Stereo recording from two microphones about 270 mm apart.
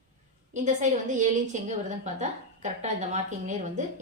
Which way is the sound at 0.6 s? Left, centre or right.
Right.